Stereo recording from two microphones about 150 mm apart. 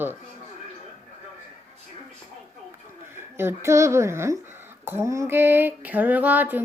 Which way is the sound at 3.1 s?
15° right (ahead or behind).